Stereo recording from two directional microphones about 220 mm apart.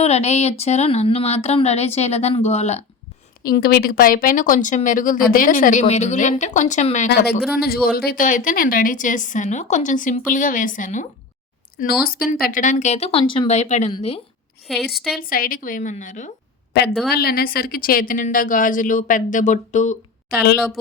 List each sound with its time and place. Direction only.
0.0 s speech: 30° left (ahead or behind)
3.4 s speech: 45° left (ahead or behind)
7.1 s speech: 45° left (ahead or behind); by 14.2 s 25° left (ahead or behind)
14.9 s speech: centre (ahead or behind)
15.2 s speech: 40° left (ahead or behind)
16.7 s speech: 50° left (ahead or behind)